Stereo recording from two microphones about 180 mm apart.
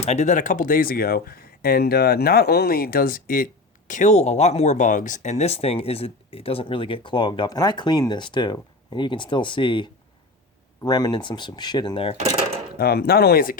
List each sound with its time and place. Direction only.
0.0 s speech: 40° left (ahead or behind)
12.8 s speech: 60° left (ahead or behind)